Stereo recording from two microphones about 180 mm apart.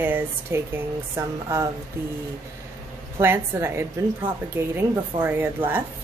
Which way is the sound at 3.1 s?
15° right (ahead or behind).